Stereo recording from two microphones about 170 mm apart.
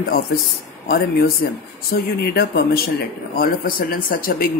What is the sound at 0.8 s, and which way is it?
A man's voice, 70° left (ahead or behind).